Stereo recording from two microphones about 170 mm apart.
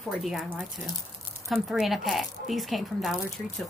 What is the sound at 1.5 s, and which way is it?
Speech, centre (ahead or behind).